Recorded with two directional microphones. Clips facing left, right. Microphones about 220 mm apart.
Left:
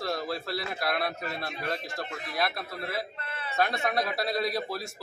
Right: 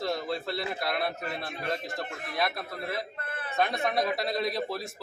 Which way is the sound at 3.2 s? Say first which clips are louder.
Right 1 dB; 50° right (ahead or behind).